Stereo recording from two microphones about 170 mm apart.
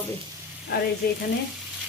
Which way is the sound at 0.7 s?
65° left (ahead or behind).